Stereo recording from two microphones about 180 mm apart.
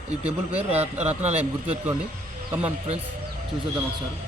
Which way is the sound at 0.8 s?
35° right (ahead or behind).